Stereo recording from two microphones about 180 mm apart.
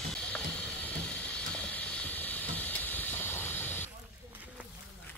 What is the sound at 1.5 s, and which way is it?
Steam, 5° left (ahead or behind).